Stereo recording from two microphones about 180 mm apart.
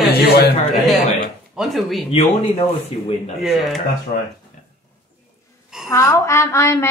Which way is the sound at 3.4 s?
Centre (ahead or behind).